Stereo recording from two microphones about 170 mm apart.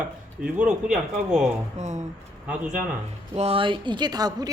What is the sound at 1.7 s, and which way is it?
Speech, 45° right (ahead or behind).